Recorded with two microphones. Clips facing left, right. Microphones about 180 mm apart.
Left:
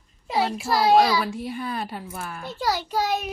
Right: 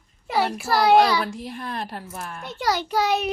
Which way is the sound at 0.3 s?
65° right (ahead or behind).